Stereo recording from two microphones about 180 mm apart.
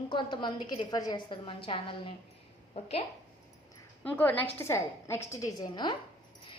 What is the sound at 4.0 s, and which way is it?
A woman's voice, 10° left (ahead or behind).